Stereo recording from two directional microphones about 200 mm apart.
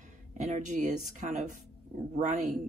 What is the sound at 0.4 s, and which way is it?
A woman's voice, 35° right (ahead or behind).